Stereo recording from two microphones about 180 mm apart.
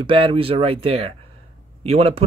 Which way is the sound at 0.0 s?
30° right (ahead or behind).